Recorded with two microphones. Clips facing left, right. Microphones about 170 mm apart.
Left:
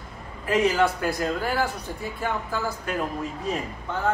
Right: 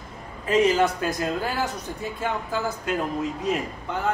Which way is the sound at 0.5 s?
20° right (ahead or behind).